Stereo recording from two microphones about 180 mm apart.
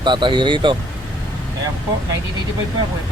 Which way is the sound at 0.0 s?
25° right (ahead or behind).